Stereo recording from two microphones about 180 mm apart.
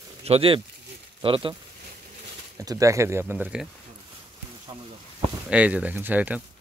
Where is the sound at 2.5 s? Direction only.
20° right (ahead or behind).